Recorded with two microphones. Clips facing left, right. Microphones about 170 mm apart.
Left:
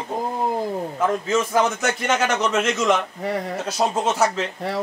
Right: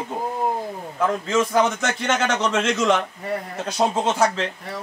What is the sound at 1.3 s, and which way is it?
A man's voice, 10° left (ahead or behind).